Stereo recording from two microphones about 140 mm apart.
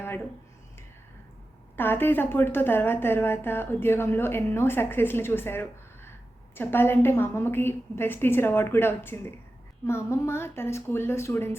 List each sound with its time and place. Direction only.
1.7 s a woman's voice: 15° left (ahead or behind)